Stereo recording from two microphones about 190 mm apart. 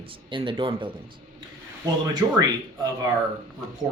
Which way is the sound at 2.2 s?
15° right (ahead or behind).